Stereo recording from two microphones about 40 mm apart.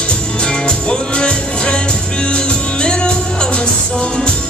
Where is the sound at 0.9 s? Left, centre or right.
Left.